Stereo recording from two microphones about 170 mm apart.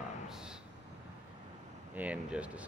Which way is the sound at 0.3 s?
5° right (ahead or behind).